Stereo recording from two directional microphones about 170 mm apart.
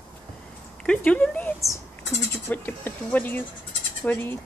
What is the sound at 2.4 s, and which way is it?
Speech, 10° left (ahead or behind).